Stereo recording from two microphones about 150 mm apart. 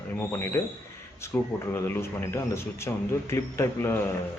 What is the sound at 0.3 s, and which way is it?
Speech, 15° left (ahead or behind).